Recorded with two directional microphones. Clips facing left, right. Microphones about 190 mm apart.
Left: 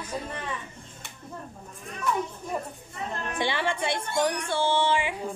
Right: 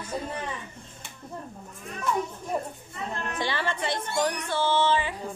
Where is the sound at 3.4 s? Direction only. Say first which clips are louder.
Left 2 dB; 15° left (ahead or behind).